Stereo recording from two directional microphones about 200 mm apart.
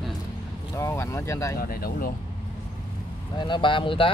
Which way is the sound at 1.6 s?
50° left (ahead or behind).